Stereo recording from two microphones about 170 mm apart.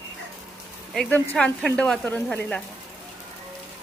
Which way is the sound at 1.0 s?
10° left (ahead or behind).